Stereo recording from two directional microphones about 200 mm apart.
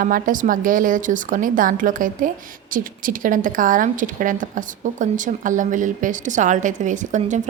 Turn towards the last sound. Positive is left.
turn(degrees=-35)  # may be behind; listen again after turning